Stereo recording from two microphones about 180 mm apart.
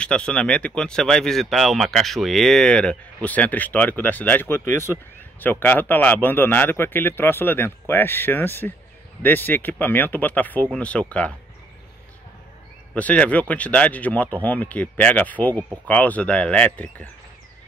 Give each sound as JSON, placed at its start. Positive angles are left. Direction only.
{"t": 0.0, "sound": "speech", "side_deg": 5}
{"t": 12.9, "sound": "speech", "side_deg": 5}